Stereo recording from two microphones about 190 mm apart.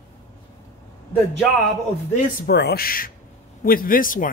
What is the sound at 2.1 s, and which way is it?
Speech, 60° left (ahead or behind).